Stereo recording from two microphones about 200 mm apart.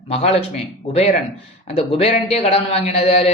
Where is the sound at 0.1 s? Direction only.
30° left (ahead or behind).